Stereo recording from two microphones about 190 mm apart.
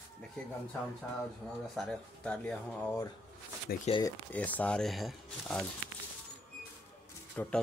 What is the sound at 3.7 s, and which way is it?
Speech, 55° left (ahead or behind).